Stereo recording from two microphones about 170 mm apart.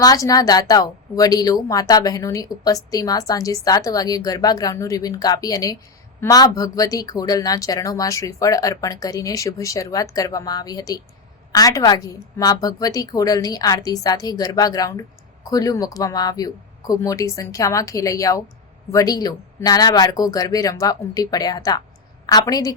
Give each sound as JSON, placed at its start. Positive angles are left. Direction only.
{"t": 0.0, "sound": "speech", "side_deg": 20}